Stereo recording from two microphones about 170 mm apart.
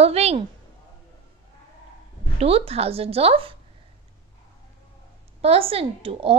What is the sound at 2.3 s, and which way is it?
A woman's voice, 35° right (ahead or behind).